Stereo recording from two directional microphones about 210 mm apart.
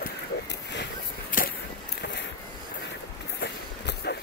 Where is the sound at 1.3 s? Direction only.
40° left (ahead or behind).